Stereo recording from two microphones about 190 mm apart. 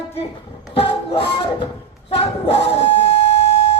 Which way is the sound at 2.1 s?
30° left (ahead or behind).